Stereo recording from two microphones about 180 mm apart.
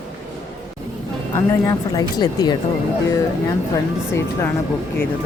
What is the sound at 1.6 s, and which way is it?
Speech, 20° left (ahead or behind).